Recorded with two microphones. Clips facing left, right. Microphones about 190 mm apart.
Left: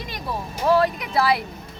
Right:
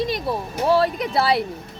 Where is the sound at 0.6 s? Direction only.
30° right (ahead or behind).